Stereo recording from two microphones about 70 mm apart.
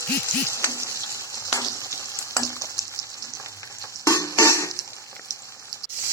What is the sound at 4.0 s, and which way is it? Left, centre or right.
Music, left.